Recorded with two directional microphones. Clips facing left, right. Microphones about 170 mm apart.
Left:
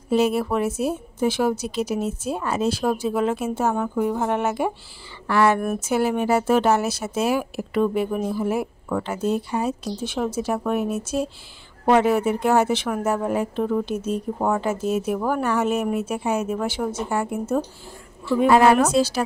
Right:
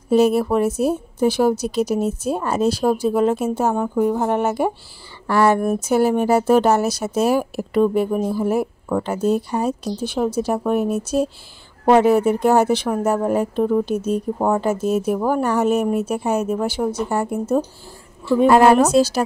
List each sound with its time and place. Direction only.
0.1 s speech: 40° right (ahead or behind)